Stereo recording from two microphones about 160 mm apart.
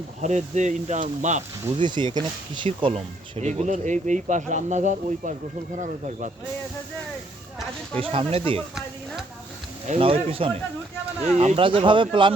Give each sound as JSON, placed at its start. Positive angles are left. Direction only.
{"t": 0.2, "sound": "speech", "side_deg": -50}
{"t": 1.8, "sound": "speech", "side_deg": -30}
{"t": 8.0, "sound": "speech", "side_deg": -35}
{"t": 9.8, "sound": "speech", "side_deg": -40}